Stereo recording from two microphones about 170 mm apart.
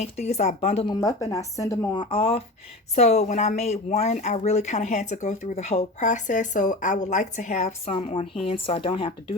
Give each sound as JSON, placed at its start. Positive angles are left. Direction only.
{"t": 0.0, "sound": "speech", "side_deg": 40}
{"t": 1.0, "sound": "speech", "side_deg": 20}